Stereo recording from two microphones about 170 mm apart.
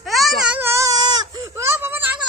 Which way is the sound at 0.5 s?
20° right (ahead or behind).